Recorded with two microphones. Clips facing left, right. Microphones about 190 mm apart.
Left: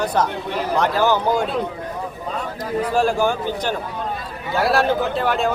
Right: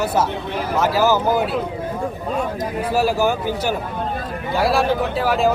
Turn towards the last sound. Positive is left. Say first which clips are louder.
# right 1 dB
turn(degrees=-5)  # may be behind; listen again after turning